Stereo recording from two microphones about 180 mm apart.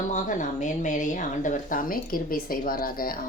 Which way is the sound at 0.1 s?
45° left (ahead or behind).